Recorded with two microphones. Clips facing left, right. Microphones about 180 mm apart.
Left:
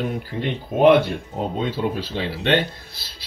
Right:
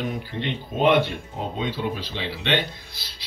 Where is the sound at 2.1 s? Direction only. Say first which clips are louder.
Left 5 dB; 45° left (ahead or behind).